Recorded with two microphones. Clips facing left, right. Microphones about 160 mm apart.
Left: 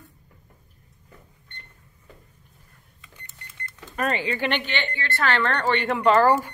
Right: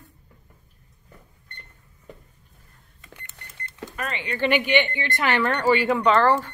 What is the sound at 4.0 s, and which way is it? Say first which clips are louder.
Speech: left 7 dB; 40° left (ahead or behind).